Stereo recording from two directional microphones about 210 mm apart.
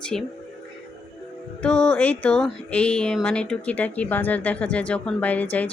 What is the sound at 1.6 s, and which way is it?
Speech, 5° left (ahead or behind).